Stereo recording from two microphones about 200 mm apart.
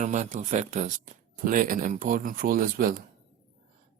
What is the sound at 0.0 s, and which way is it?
Speech, 35° right (ahead or behind).